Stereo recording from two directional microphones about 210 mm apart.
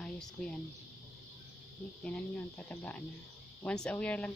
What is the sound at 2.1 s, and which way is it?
Speech, 5° left (ahead or behind).